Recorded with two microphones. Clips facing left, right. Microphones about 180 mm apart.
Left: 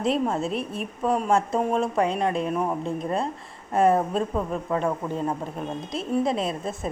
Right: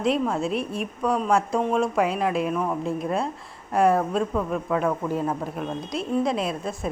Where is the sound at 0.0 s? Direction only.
Centre (ahead or behind).